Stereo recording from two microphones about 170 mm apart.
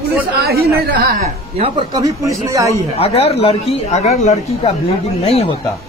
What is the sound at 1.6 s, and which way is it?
Speech, 30° right (ahead or behind).